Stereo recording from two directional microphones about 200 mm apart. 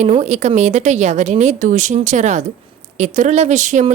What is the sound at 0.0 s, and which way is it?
A woman's voice, 35° right (ahead or behind).